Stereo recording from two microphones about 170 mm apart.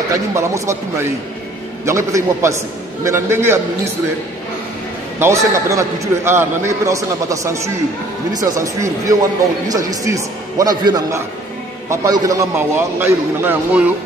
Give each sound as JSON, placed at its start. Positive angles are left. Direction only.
{"t": 0.3, "sound": "a man's voice", "side_deg": -15}
{"t": 5.2, "sound": "a man's voice", "side_deg": -20}